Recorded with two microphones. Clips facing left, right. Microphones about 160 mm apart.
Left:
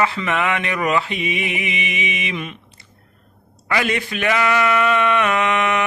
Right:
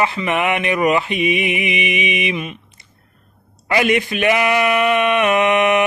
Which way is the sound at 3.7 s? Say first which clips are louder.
Right 5 dB; 20° right (ahead or behind).